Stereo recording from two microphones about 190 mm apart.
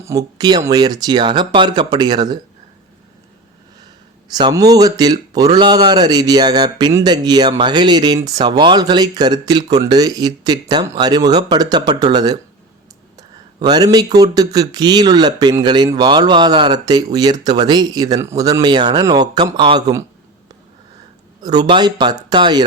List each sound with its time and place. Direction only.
0.0 s speech: 20° right (ahead or behind)
4.3 s speech: 20° right (ahead or behind)
21.4 s speech: 20° right (ahead or behind)